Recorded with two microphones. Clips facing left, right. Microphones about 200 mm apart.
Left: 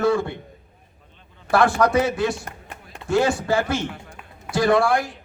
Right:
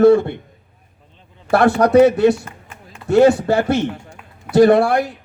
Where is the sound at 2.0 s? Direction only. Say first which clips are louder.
Right 10 dB; 65° right (ahead or behind).